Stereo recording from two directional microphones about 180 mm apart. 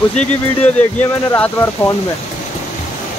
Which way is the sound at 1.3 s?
10° left (ahead or behind).